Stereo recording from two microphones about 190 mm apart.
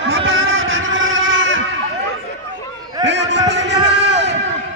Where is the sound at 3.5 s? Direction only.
70° right (ahead or behind).